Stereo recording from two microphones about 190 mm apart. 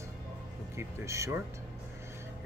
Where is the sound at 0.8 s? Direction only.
15° right (ahead or behind).